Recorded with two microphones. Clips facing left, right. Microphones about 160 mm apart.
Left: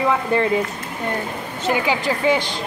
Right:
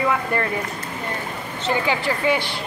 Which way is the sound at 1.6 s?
15° left (ahead or behind).